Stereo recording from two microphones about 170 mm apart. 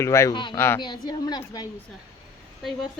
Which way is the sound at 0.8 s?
25° left (ahead or behind).